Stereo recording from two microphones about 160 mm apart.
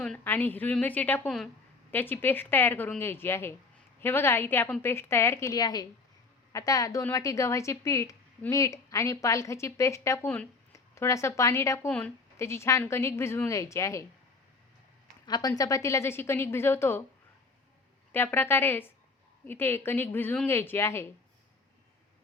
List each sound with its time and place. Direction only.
0.0 s a woman's voice: 10° left (ahead or behind)
15.3 s a woman's voice: 25° left (ahead or behind)
18.1 s a woman's voice: 15° left (ahead or behind)